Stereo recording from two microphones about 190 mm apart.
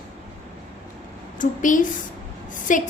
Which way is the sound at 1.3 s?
45° left (ahead or behind).